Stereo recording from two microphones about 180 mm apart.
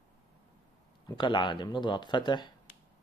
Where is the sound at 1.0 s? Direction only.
25° left (ahead or behind).